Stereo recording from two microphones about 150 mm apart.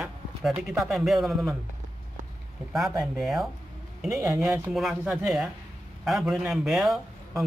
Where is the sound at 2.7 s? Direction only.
Centre (ahead or behind).